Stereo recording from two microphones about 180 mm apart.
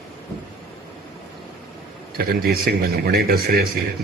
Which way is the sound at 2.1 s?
55° right (ahead or behind).